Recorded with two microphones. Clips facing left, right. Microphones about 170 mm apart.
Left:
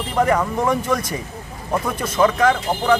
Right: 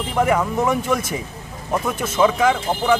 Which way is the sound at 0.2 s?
5° right (ahead or behind).